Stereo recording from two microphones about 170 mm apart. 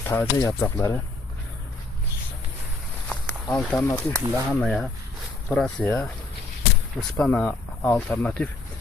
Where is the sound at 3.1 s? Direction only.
5° left (ahead or behind).